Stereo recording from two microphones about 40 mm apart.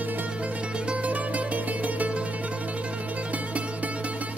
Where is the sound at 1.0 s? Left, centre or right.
Right.